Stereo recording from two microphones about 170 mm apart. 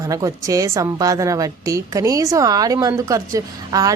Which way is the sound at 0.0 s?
20° right (ahead or behind).